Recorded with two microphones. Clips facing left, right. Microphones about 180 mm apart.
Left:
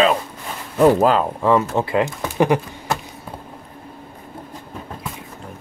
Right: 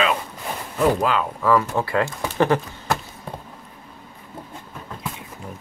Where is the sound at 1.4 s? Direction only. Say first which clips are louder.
Even; 25° left (ahead or behind).